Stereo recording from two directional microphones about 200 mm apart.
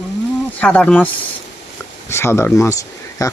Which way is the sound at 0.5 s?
5° left (ahead or behind).